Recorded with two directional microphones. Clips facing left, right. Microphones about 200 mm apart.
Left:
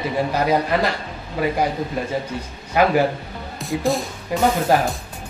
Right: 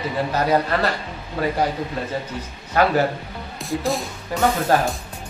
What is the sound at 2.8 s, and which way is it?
Speech, 15° left (ahead or behind).